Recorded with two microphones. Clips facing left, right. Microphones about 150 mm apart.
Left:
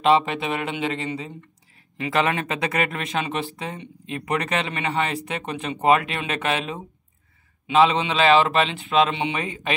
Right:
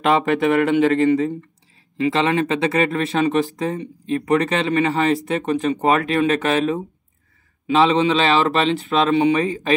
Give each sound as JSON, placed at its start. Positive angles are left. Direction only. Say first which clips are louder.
{"t": 0.0, "sound": "speech", "louder": "right 3 dB", "side_deg": -50}
{"t": 2.0, "sound": "speech", "louder": "right 5 dB", "side_deg": -25}